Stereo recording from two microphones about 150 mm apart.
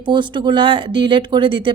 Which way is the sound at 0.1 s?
30° right (ahead or behind).